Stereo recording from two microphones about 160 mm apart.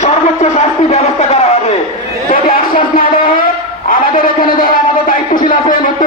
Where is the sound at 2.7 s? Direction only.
60° left (ahead or behind).